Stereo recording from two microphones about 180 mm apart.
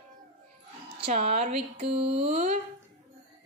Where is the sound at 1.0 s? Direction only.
35° right (ahead or behind).